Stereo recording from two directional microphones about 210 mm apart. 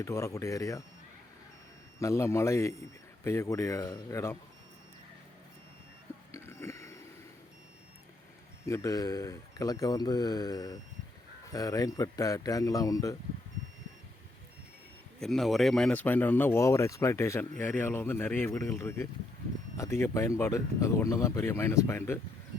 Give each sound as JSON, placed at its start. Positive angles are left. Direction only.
{"t": 0.0, "sound": "speech", "side_deg": 15}
{"t": 2.0, "sound": "speech", "side_deg": 15}
{"t": 6.3, "sound": "a sound", "side_deg": 10}
{"t": 8.6, "sound": "speech", "side_deg": 15}
{"t": 15.2, "sound": "speech", "side_deg": 0}